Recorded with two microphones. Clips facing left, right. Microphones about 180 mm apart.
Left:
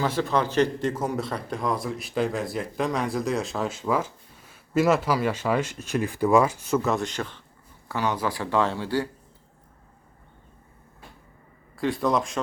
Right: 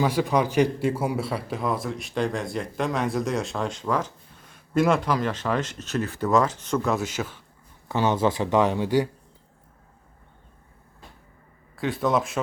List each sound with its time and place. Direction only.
0.0 s a man's voice: 15° right (ahead or behind)
7.9 s speech: 25° right (ahead or behind)
11.8 s a man's voice: centre (ahead or behind)